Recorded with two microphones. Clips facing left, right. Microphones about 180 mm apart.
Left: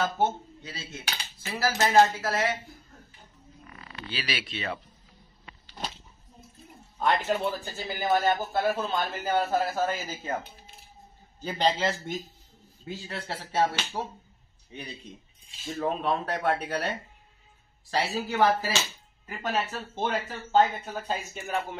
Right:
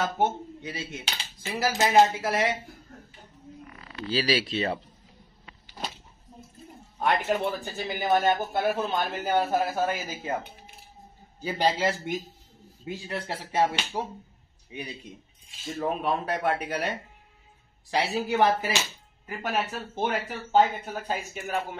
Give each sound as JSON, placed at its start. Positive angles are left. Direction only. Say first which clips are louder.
{"t": 0.0, "sound": "speech", "louder": "even", "side_deg": -15}
{"t": 4.1, "sound": "speech", "louder": "right 9 dB", "side_deg": -35}
{"t": 7.0, "sound": "speech", "louder": "right 1 dB", "side_deg": -15}
{"t": 11.4, "sound": "a man's voice", "louder": "right 1 dB", "side_deg": -10}
{"t": 17.9, "sound": "speech", "louder": "right 2 dB", "side_deg": -20}